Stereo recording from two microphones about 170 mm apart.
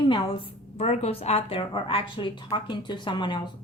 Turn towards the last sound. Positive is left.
turn(degrees=25)  # may be behind; listen again after turning